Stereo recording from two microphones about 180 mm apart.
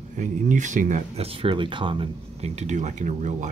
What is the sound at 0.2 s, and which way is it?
Speech, 45° right (ahead or behind).